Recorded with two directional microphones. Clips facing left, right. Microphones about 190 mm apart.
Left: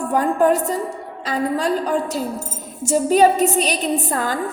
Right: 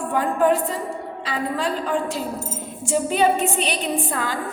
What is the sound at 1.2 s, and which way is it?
A woman's voice, 40° left (ahead or behind).